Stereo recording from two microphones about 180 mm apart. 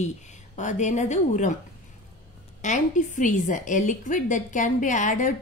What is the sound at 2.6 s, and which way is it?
A woman's voice, 45° left (ahead or behind).